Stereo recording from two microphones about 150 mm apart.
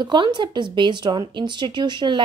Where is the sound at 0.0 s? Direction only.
30° right (ahead or behind).